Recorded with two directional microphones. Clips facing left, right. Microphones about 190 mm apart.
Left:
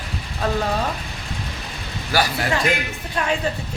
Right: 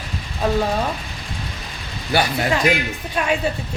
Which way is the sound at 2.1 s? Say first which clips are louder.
Right 2 dB; 25° right (ahead or behind).